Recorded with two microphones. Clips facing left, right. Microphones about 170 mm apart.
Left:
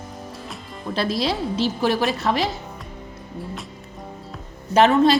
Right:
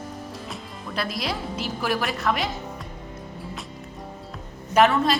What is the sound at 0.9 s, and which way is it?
A woman's voice, 30° left (ahead or behind).